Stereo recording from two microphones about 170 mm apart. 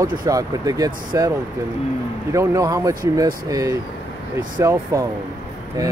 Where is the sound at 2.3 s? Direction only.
20° right (ahead or behind).